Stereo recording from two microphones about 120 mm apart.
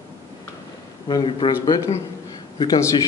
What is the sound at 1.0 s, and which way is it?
Speech, 40° left (ahead or behind).